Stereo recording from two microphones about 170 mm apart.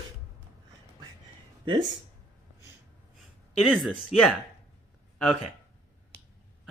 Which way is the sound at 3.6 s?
5° right (ahead or behind).